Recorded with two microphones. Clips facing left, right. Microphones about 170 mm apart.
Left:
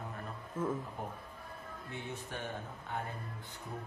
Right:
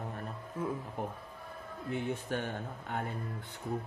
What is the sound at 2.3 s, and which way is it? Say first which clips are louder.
Speech: right 5 dB; 60° right (ahead or behind).